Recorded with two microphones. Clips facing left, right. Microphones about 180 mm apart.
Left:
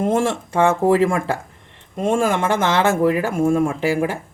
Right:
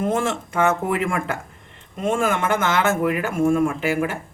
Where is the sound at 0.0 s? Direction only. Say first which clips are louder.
Left 3 dB; 30° left (ahead or behind).